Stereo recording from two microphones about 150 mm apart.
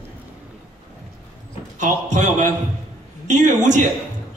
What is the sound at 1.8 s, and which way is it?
A man's voice, 55° right (ahead or behind).